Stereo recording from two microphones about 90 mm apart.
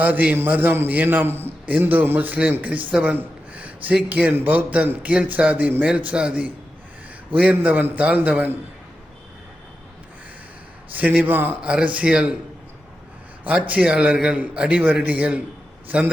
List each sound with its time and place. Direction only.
0.0 s a man's voice: 15° right (ahead or behind)
2.9 s a sound: 15° right (ahead or behind)
4.1 s a man's voice: 20° right (ahead or behind)
10.9 s a man's voice: 15° right (ahead or behind)
13.7 s a man's voice: 10° right (ahead or behind)